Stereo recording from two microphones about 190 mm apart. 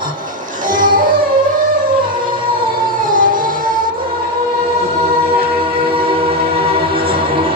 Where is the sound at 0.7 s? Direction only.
45° right (ahead or behind).